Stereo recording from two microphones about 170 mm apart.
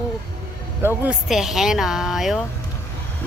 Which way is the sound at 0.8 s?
10° right (ahead or behind).